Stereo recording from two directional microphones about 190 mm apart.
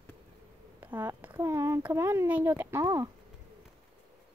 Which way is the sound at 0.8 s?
10° right (ahead or behind).